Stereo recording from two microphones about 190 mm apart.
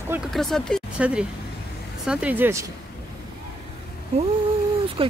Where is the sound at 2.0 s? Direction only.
5° right (ahead or behind).